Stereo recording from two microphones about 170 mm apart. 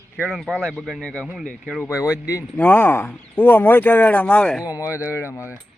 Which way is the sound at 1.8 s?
15° left (ahead or behind).